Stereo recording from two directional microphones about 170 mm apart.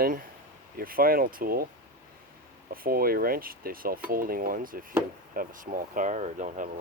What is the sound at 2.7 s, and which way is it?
Speech, 60° right (ahead or behind).